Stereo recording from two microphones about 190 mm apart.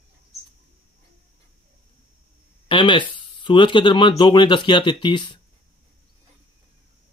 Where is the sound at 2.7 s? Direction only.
25° left (ahead or behind).